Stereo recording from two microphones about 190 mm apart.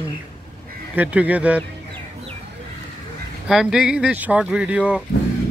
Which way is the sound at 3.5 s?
Centre (ahead or behind).